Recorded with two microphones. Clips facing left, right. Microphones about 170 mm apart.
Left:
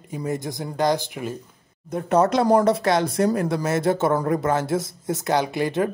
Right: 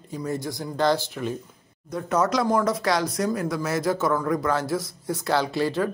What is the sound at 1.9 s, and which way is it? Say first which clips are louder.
A man's voice: left 4 dB; 25° left (ahead or behind).